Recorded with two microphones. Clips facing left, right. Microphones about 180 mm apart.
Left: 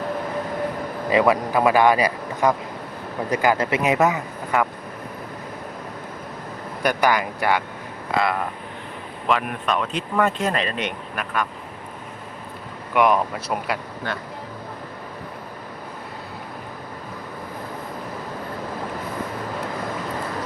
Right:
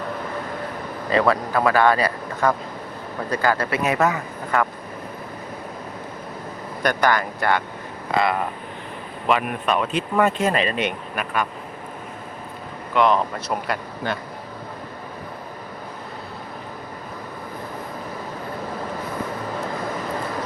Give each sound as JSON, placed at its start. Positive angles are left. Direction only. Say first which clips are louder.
{"t": 1.1, "sound": "speech", "louder": "left 1 dB", "side_deg": 15}
{"t": 6.8, "sound": "speech", "louder": "even", "side_deg": 10}
{"t": 8.1, "sound": "speech", "louder": "right 1 dB", "side_deg": 0}
{"t": 12.9, "sound": "speech", "louder": "even", "side_deg": 10}